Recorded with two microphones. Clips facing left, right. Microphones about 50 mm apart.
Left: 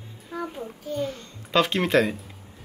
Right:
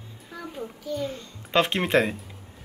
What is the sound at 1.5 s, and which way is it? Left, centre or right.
Speech, right.